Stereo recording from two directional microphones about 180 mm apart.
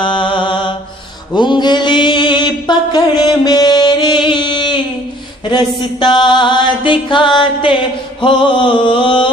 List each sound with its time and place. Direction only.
0.0 s mantra: 25° left (ahead or behind)
5.5 s chant: 25° left (ahead or behind)